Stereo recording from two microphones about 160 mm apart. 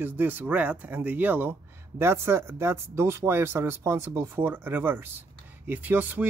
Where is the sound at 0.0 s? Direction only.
10° right (ahead or behind).